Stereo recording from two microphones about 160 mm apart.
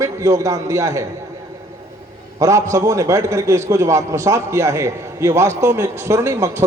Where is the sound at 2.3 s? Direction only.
20° right (ahead or behind).